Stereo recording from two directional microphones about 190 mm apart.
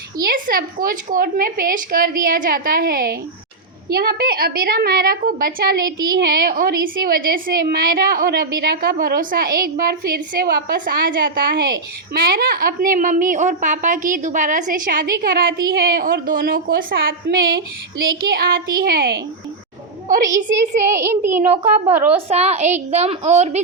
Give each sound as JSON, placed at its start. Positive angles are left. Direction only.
{"t": 0.2, "sound": "a woman's voice", "side_deg": -50}
{"t": 20.8, "sound": "a child's voice", "side_deg": -15}
{"t": 21.5, "sound": "a woman's voice", "side_deg": -35}